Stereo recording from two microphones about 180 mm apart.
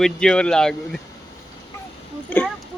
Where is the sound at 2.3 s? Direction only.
10° left (ahead or behind).